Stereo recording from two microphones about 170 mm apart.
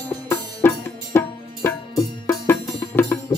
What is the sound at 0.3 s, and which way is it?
Music, 15° left (ahead or behind).